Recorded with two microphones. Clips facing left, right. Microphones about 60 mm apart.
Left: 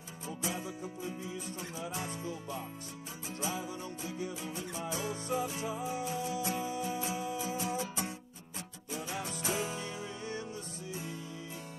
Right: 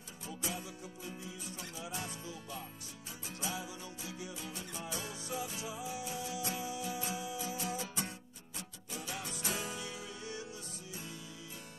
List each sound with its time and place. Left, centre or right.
0.4 s music: left
9.8 s music: left